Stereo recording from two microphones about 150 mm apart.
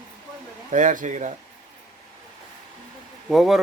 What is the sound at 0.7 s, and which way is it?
Speech, 55° right (ahead or behind).